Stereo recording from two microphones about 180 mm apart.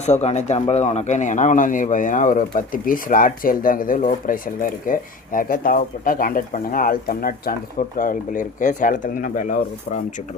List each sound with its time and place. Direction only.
0.0 s speech: 40° left (ahead or behind)